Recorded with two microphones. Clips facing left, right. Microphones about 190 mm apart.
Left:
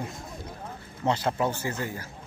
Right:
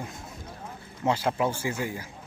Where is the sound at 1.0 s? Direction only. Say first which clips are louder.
Even; 10° right (ahead or behind).